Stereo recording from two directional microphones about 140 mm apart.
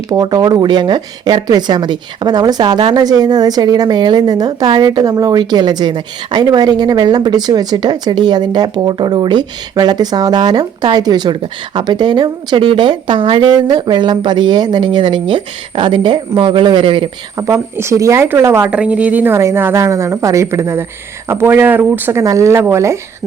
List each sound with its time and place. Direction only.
0.1 s a woman's voice: 25° right (ahead or behind)
17.3 s a woman's voice: 20° right (ahead or behind)